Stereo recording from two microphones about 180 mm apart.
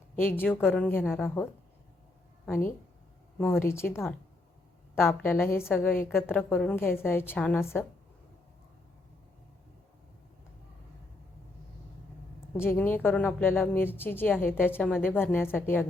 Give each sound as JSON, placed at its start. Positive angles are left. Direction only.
{"t": 0.2, "sound": "a woman's voice", "side_deg": 10}
{"t": 3.3, "sound": "a woman's voice", "side_deg": 10}
{"t": 12.5, "sound": "a woman's voice", "side_deg": 10}